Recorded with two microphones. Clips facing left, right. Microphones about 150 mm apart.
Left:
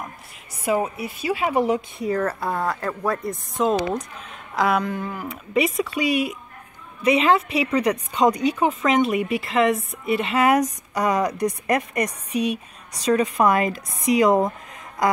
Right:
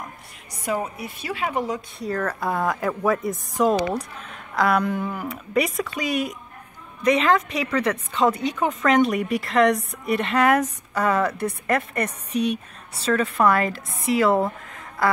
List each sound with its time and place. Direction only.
0.7 s a woman's voice: 10° left (ahead or behind)
1.4 s a woman's voice: 15° left (ahead or behind)
2.5 s a woman's voice: 10° right (ahead or behind); by 8.5 s 15° left (ahead or behind)
8.8 s a woman's voice: 5° left (ahead or behind)